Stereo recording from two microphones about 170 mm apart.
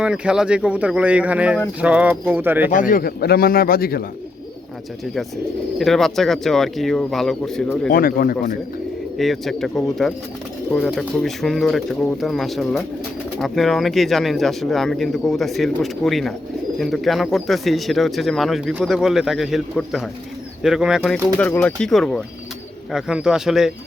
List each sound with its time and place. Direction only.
0.0 s speech: 5° right (ahead or behind)
2.6 s speech: 50° left (ahead or behind)
5.8 s speech: centre (ahead or behind)
7.9 s speech: 55° left (ahead or behind)
9.1 s speech: centre (ahead or behind)